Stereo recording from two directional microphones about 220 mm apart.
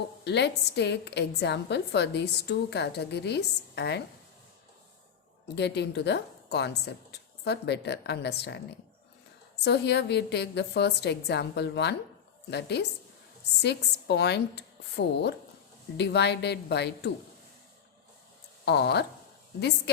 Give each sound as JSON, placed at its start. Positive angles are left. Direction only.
{"t": 0.3, "sound": "a woman's voice", "side_deg": 50}
{"t": 5.5, "sound": "a woman's voice", "side_deg": 50}
{"t": 9.6, "sound": "a woman's voice", "side_deg": 50}
{"t": 18.6, "sound": "a woman's voice", "side_deg": 50}